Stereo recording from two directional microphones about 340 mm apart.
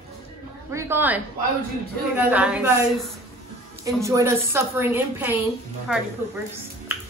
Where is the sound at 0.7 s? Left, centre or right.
Centre.